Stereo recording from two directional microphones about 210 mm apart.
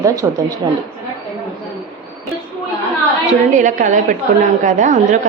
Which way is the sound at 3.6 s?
35° right (ahead or behind).